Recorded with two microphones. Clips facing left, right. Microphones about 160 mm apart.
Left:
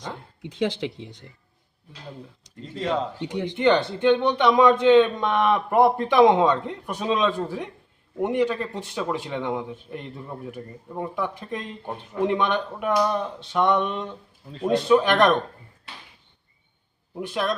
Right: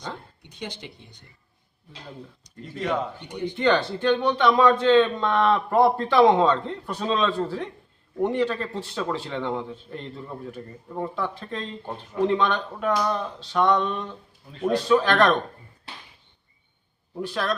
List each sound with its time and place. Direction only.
0.4 s speech: 90° left
2.6 s speech: 30° left (ahead or behind)
3.2 s speech: 90° left
3.5 s a man's voice: 20° left (ahead or behind)
17.2 s speech: 20° left (ahead or behind)